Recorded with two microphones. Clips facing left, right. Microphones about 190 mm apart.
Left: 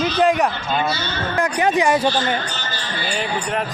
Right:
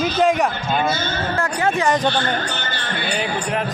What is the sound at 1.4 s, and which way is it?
Speech, 15° left (ahead or behind).